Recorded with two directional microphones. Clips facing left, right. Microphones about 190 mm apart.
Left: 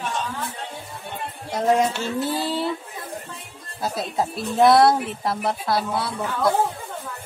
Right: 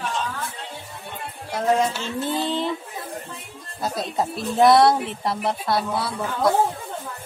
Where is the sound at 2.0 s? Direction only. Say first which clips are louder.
Left 1 dB; 5° left (ahead or behind).